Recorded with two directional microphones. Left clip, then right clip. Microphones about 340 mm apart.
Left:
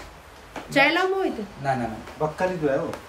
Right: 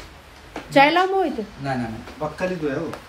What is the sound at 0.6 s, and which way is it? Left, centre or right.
Speech, centre.